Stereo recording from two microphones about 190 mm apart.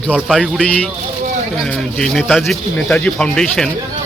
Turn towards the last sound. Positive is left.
turn(degrees=5)  # may be behind; listen again after turning